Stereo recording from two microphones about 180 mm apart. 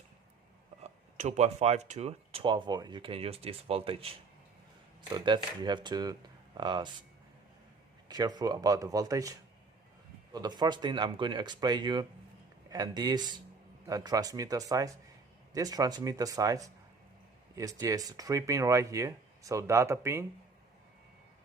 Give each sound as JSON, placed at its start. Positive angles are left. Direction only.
{"t": 1.1, "sound": "speech", "side_deg": -40}
{"t": 5.1, "sound": "speech", "side_deg": -25}
{"t": 8.0, "sound": "speech", "side_deg": -20}